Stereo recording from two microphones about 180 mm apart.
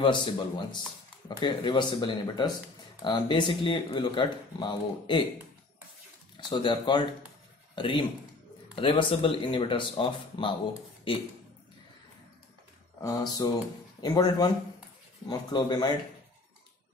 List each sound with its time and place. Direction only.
0.0 s speech: 25° left (ahead or behind)
6.3 s a man's voice: 25° left (ahead or behind)
13.0 s speech: 20° left (ahead or behind)